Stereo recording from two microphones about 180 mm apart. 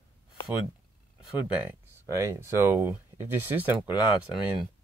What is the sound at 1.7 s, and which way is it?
Speech, 15° right (ahead or behind).